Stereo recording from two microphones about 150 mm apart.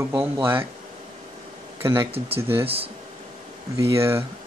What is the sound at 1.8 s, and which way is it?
Speech, 15° right (ahead or behind).